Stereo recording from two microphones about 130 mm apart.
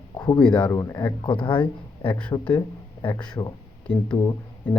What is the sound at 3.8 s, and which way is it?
Speech, 10° left (ahead or behind).